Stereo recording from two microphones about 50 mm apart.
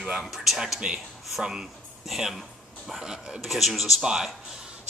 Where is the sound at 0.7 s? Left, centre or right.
Centre.